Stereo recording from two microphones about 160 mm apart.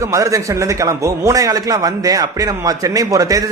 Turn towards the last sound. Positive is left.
turn(degrees=-20)  # may be behind; listen again after turning